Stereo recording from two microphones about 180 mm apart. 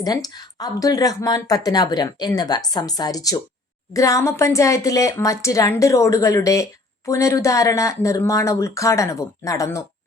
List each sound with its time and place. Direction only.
0.0 s speech: 20° left (ahead or behind)